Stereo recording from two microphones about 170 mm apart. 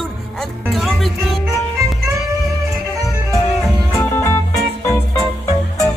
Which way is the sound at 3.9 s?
10° left (ahead or behind).